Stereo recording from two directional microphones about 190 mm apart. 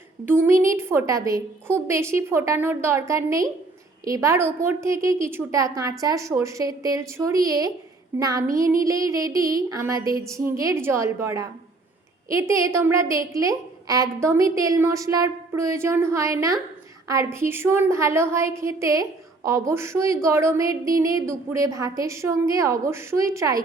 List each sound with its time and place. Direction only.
0.3 s a woman's voice: 10° right (ahead or behind)